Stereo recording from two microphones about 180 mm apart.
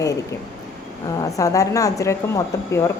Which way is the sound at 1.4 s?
20° left (ahead or behind).